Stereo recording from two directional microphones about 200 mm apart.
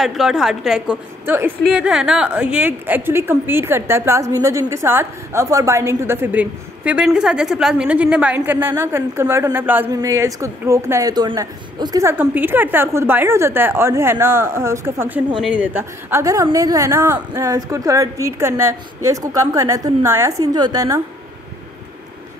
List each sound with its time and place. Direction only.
0.0 s a woman's voice: centre (ahead or behind); by 21.0 s 15° right (ahead or behind)